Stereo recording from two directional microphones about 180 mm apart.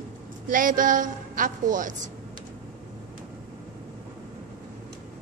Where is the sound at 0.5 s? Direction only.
50° right (ahead or behind).